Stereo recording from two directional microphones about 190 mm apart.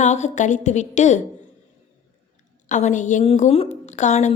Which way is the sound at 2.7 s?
40° left (ahead or behind).